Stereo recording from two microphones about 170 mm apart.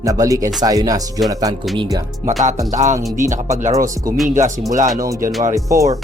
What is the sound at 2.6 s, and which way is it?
Speech, 45° right (ahead or behind).